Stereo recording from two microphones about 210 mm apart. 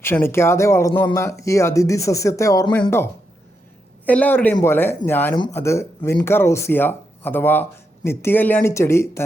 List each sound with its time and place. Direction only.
0.0 s speech: 10° left (ahead or behind)
4.0 s speech: 5° left (ahead or behind)